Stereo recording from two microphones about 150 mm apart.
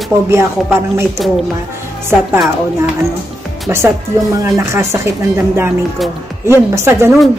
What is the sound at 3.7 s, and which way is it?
A man's voice, 15° right (ahead or behind).